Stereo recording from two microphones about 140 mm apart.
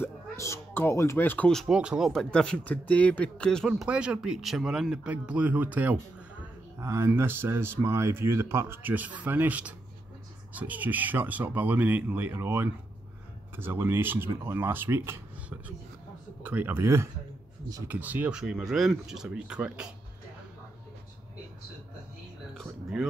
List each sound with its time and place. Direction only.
0.0 s speech: 15° left (ahead or behind)
1.5 s speech: centre (ahead or behind); by 15.1 s 15° right (ahead or behind)
16.4 s speech: 15° right (ahead or behind)
22.5 s a sound: centre (ahead or behind)